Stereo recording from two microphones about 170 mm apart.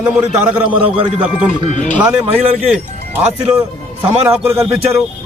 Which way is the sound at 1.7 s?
45° left (ahead or behind).